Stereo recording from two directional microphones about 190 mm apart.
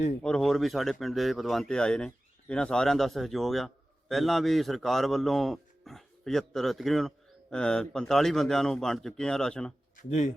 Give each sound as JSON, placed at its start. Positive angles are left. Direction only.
{"t": 0.2, "sound": "speech", "side_deg": 5}
{"t": 9.9, "sound": "speech", "side_deg": 40}